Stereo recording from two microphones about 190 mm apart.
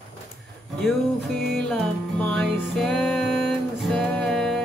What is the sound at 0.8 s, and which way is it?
Music, centre (ahead or behind).